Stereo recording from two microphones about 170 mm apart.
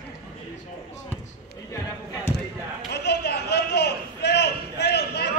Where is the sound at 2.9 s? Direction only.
75° left (ahead or behind).